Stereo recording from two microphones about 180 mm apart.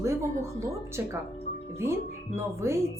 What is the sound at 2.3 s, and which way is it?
Speech, 15° right (ahead or behind).